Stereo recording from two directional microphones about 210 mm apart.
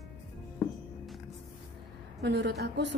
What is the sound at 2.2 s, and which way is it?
Speech, 55° right (ahead or behind).